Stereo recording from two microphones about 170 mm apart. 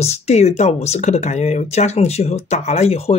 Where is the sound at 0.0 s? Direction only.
40° left (ahead or behind).